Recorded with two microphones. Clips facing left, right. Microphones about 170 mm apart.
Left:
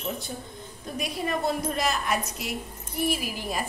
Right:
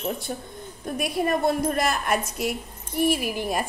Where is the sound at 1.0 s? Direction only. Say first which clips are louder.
Right 5 dB; 60° right (ahead or behind).